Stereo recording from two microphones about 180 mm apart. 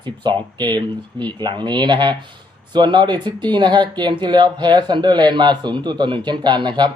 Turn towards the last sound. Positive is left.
turn(degrees=-25)  # may be behind; listen again after turning